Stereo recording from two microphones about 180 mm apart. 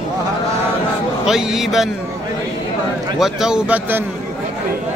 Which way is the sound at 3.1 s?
Centre (ahead or behind).